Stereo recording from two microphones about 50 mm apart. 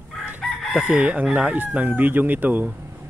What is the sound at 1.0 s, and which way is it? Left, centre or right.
Speech, right.